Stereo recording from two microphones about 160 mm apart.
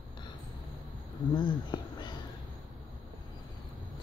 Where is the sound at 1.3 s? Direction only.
30° left (ahead or behind).